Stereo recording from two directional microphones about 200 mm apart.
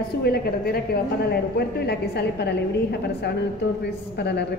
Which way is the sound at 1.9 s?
55° left (ahead or behind).